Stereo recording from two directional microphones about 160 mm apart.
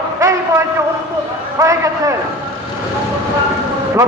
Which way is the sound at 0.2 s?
20° right (ahead or behind).